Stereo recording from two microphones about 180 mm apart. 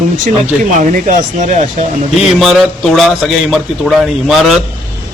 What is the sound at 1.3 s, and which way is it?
Speech, 40° right (ahead or behind).